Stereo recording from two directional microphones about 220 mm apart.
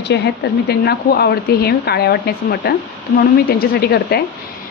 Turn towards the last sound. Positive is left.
turn(degrees=45)  # may be behind; listen again after turning